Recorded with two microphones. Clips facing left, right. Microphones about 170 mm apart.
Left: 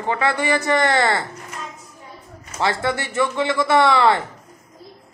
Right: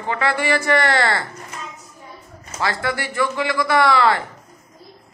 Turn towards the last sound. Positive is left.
turn(degrees=25)  # may be behind; listen again after turning